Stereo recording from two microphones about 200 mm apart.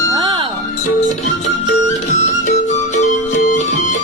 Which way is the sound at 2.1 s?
35° left (ahead or behind).